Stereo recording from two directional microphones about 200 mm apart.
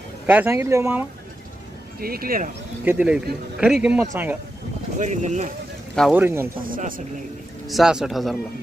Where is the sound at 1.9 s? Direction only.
50° right (ahead or behind).